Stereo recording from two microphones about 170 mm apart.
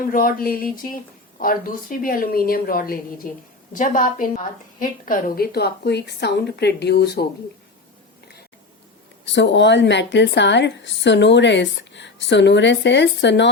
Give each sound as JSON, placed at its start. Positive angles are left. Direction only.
{"t": 0.1, "sound": "a woman's voice", "side_deg": 60}
{"t": 9.2, "sound": "a woman's voice", "side_deg": 90}